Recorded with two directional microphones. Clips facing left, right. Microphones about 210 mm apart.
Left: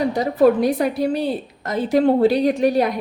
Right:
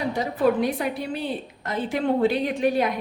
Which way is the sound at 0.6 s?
40° left (ahead or behind).